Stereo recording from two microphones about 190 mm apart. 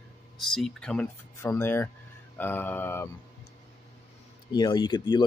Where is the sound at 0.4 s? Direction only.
Centre (ahead or behind).